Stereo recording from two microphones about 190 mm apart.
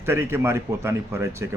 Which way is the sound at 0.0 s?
10° right (ahead or behind).